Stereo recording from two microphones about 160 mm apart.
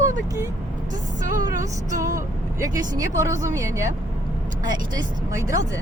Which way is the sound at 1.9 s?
20° right (ahead or behind).